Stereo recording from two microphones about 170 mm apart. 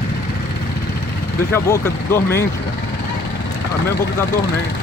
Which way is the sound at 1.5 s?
15° left (ahead or behind).